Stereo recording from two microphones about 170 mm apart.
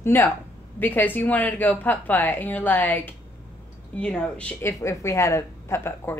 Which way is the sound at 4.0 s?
5° left (ahead or behind).